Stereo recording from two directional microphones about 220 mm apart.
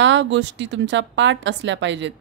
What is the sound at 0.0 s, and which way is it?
Speech, 55° right (ahead or behind).